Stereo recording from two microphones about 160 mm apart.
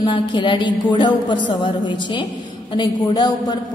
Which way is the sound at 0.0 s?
30° left (ahead or behind).